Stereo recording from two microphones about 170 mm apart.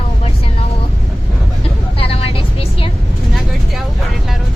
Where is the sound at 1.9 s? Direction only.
35° left (ahead or behind).